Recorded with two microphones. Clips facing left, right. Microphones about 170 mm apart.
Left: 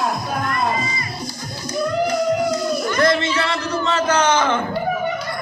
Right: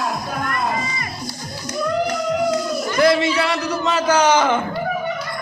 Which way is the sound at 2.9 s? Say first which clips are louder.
Right 4 dB; 10° right (ahead or behind).